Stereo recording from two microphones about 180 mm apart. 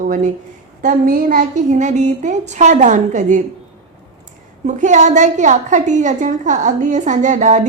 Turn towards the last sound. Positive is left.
turn(degrees=-40)  # may be behind; listen again after turning